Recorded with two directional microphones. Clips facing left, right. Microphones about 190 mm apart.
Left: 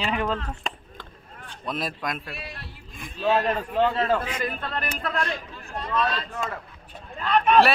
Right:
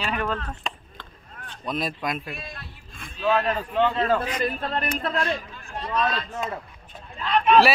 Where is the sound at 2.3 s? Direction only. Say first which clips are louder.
Right 1 dB; 35° left (ahead or behind).